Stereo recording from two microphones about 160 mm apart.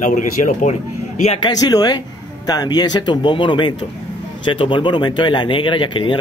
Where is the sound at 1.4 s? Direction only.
25° left (ahead or behind).